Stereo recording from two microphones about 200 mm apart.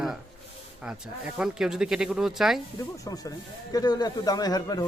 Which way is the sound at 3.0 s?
20° left (ahead or behind).